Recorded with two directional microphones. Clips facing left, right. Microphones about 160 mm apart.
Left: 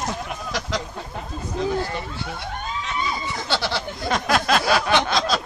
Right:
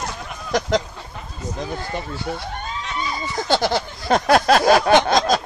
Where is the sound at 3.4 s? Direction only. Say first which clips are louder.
Right 7 dB; 45° right (ahead or behind).